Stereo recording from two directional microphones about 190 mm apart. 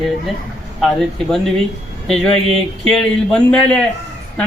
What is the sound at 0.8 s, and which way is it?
A man's voice, 5° left (ahead or behind).